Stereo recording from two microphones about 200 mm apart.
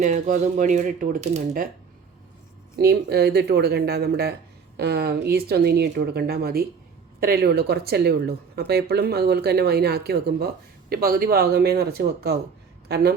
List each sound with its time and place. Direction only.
0.0 s speech: 40° right (ahead or behind)
2.7 s speech: 55° right (ahead or behind)